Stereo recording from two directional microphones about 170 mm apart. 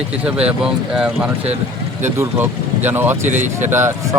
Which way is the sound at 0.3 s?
5° right (ahead or behind).